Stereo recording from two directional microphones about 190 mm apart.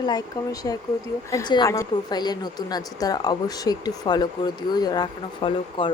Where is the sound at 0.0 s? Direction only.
20° left (ahead or behind).